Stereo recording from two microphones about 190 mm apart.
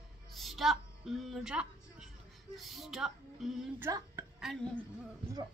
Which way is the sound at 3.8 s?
15° right (ahead or behind).